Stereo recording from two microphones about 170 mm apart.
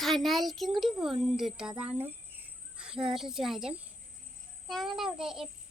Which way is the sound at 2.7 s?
5° right (ahead or behind).